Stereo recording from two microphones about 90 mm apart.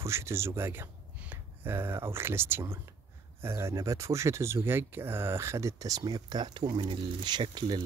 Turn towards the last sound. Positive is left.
turn(degrees=-50)  # may be behind; listen again after turning